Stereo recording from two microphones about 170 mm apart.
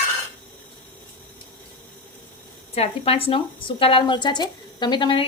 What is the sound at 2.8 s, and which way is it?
Speech, 35° left (ahead or behind).